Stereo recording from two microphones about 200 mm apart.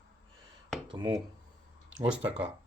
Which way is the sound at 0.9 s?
25° right (ahead or behind).